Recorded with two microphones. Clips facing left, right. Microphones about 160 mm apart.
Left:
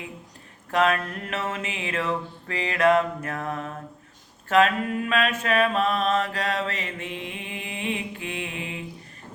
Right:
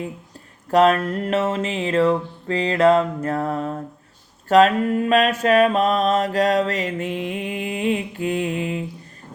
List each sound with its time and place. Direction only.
0.7 s mantra: 35° right (ahead or behind)